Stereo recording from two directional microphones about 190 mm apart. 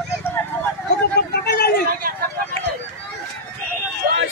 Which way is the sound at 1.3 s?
60° left (ahead or behind).